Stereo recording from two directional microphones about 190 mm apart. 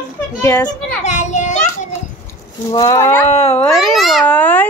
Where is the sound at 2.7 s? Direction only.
20° left (ahead or behind).